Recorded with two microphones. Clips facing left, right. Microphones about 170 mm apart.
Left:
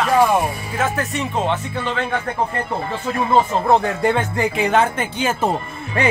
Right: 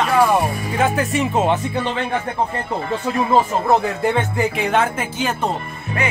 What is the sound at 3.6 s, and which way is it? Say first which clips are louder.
Speech: left 1 dB; centre (ahead or behind).